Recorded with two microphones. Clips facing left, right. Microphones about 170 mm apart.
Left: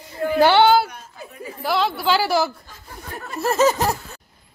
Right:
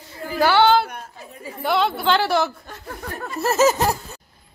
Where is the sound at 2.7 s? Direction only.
65° right (ahead or behind).